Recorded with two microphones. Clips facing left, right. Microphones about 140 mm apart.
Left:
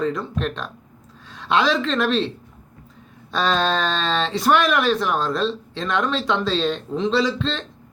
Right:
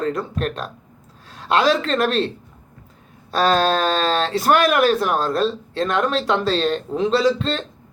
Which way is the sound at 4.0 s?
40° right (ahead or behind).